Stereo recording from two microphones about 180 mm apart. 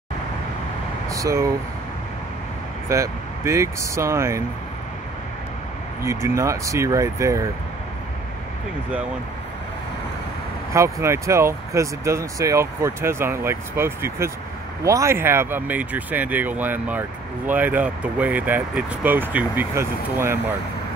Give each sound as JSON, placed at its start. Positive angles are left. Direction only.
{"t": 1.1, "sound": "speech", "side_deg": -20}
{"t": 2.9, "sound": "speech", "side_deg": -15}
{"t": 6.0, "sound": "speech", "side_deg": -15}
{"t": 10.7, "sound": "speech", "side_deg": -15}